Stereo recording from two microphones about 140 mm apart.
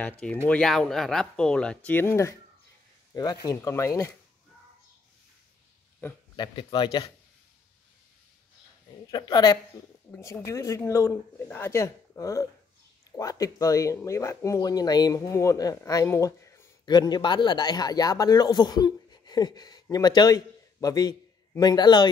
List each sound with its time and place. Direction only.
0.0 s speech: 10° left (ahead or behind)
3.4 s speech: 20° left (ahead or behind)
6.3 s speech: 35° left (ahead or behind)
9.0 s speech: 30° left (ahead or behind)
16.8 s speech: 30° left (ahead or behind)